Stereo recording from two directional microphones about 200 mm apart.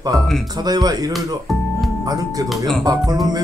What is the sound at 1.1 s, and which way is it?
Music, centre (ahead or behind).